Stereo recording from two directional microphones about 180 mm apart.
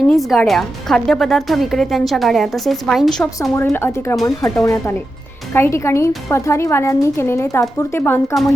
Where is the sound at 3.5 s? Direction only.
15° left (ahead or behind).